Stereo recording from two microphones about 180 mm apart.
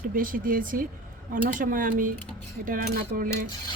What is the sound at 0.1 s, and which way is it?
Speech, 50° right (ahead or behind).